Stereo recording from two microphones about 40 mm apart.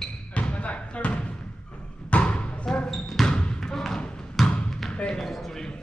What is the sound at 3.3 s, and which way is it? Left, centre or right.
Basketball bounce, left.